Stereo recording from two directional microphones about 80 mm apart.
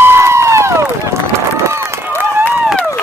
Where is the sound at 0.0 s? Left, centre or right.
Right.